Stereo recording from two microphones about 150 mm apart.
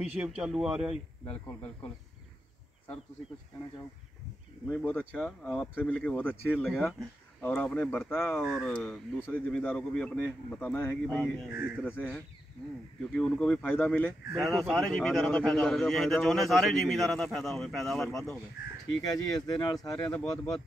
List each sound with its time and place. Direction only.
0.0 s a man's voice: 5° right (ahead or behind)
1.2 s speech: 10° left (ahead or behind)
4.6 s speech: 15° left (ahead or behind)
6.9 s speech: centre (ahead or behind)
8.4 s a man's voice: 5° right (ahead or behind)
8.7 s a man's voice: 5° left (ahead or behind)
11.5 s speech: 10° right (ahead or behind)
11.8 s speech: 10° left (ahead or behind)
14.3 s a man's voice: centre (ahead or behind)
19.0 s speech: 25° left (ahead or behind)
19.9 s a man's voice: 5° left (ahead or behind)